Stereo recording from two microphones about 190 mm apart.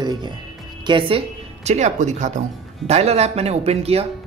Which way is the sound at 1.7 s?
40° right (ahead or behind).